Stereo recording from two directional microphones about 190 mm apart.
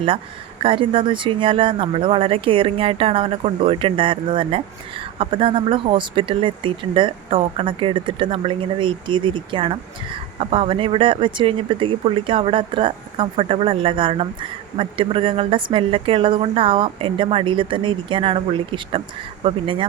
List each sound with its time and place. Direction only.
0.6 s speech: 25° right (ahead or behind)